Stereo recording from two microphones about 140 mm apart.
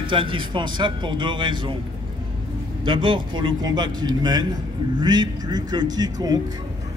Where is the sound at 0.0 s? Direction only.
35° right (ahead or behind).